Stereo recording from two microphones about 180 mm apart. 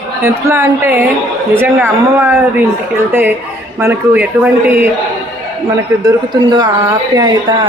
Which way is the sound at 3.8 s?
10° right (ahead or behind).